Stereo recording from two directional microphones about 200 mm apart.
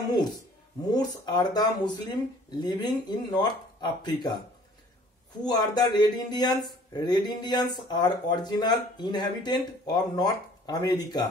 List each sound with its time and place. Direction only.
0.9 s speech: 20° left (ahead or behind)
5.4 s speech: 20° left (ahead or behind)